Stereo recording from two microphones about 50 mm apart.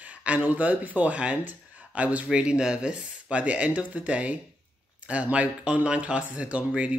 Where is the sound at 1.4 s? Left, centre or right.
Right.